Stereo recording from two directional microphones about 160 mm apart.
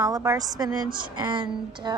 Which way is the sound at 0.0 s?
20° right (ahead or behind).